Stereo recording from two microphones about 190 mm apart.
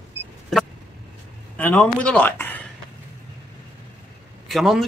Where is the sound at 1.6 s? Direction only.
5° left (ahead or behind).